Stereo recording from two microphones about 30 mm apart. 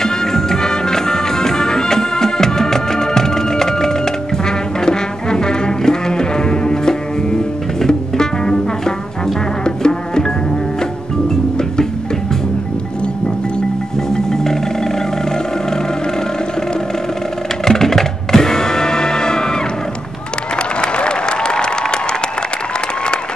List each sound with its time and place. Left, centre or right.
0.0 s music: centre
14.1 s marimba: centre
17.6 s music: centre
20.8 s applause: left